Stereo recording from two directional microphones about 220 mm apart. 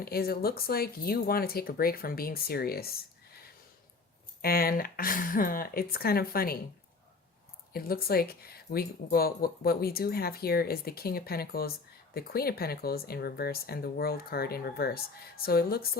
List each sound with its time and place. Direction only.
0.0 s speech: 45° left (ahead or behind)
4.4 s speech: 45° left (ahead or behind)
7.7 s speech: 45° left (ahead or behind)